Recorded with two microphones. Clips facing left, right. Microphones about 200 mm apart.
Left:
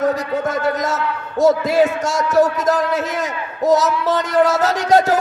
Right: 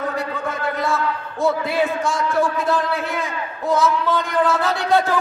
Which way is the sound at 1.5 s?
40° left (ahead or behind).